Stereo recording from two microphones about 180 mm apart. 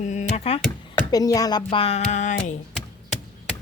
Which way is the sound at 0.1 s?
40° left (ahead or behind).